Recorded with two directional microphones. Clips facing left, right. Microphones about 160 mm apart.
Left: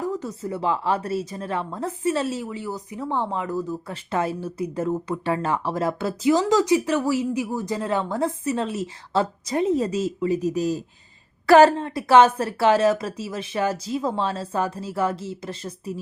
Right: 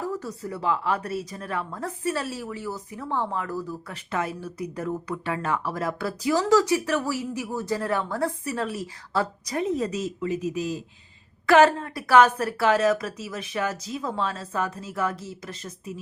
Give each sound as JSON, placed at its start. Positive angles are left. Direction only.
{"t": 0.0, "sound": "a woman's voice", "side_deg": 20}